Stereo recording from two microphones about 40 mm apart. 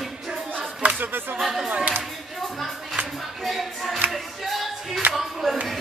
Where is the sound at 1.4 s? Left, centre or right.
Centre.